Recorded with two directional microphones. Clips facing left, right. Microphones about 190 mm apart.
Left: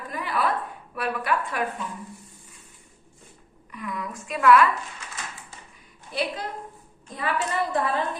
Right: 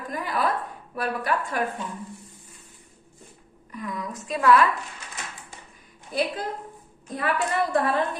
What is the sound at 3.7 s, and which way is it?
Speech, 35° right (ahead or behind).